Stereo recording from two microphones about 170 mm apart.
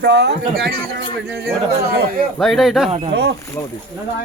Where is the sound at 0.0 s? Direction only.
90° right.